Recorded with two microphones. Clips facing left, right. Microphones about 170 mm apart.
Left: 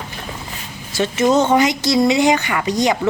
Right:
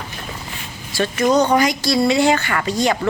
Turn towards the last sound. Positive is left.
turn(degrees=20)  # may be behind; listen again after turning